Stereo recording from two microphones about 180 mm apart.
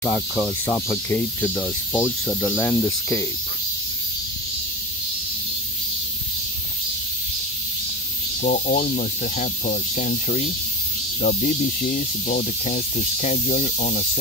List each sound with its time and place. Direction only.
0.0 s cricket: 10° left (ahead or behind)
8.4 s speech: 45° left (ahead or behind)